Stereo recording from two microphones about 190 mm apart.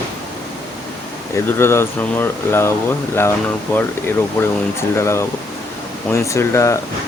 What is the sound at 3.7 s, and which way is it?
Speech, 10° left (ahead or behind).